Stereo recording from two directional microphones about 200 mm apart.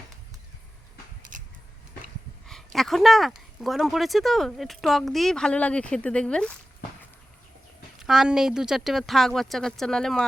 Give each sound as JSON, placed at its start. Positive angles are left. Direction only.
{"t": 1.3, "sound": "a sound", "side_deg": -40}
{"t": 2.5, "sound": "speech", "side_deg": 0}
{"t": 7.9, "sound": "speech", "side_deg": 0}